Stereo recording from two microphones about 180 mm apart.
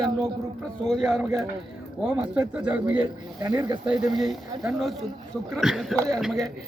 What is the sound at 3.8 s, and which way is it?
Speech, centre (ahead or behind).